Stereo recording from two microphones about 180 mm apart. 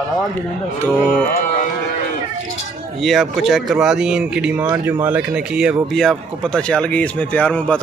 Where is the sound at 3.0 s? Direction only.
Centre (ahead or behind).